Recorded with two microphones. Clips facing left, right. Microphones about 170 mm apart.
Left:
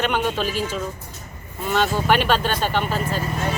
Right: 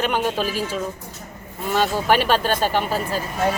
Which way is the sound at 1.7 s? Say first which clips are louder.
Right 1 dB; 40° right (ahead or behind).